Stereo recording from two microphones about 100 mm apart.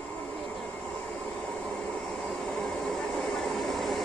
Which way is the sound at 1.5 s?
5° left (ahead or behind).